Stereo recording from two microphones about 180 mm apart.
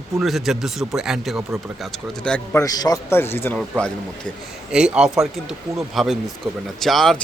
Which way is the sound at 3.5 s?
Centre (ahead or behind).